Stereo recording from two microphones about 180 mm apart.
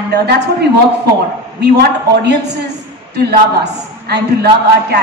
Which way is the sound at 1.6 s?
65° right (ahead or behind).